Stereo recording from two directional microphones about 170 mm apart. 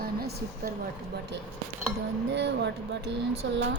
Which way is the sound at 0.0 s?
65° right (ahead or behind).